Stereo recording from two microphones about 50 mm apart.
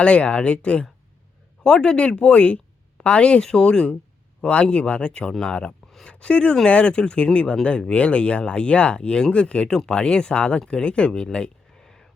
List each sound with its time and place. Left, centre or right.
0.0 s speech: left